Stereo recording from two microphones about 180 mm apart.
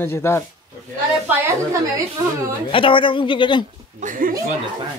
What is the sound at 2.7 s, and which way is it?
Speech, 30° left (ahead or behind).